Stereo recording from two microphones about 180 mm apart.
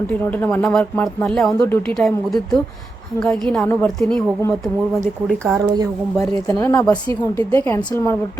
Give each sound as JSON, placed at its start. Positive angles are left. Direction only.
{"t": 0.1, "sound": "speech", "side_deg": 10}
{"t": 2.0, "sound": "speech", "side_deg": 0}
{"t": 5.3, "sound": "speech", "side_deg": 0}
{"t": 6.1, "sound": "speech", "side_deg": 15}